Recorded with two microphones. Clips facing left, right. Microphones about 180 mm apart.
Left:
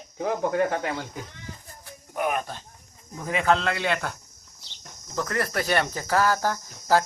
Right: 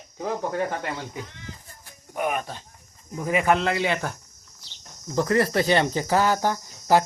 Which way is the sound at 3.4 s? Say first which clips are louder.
Even; 15° right (ahead or behind).